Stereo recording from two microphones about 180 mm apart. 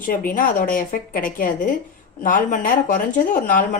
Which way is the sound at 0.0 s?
50° left (ahead or behind).